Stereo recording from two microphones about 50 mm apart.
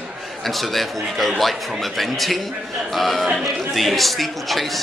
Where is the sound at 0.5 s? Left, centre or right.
Centre.